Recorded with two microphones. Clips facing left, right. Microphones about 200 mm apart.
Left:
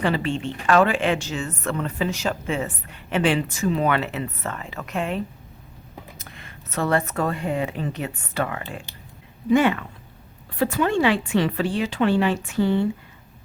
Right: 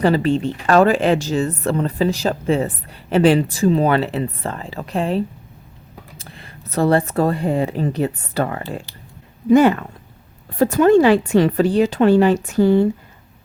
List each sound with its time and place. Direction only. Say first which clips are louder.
0.0 s speech: right 7 dB; 40° right (ahead or behind)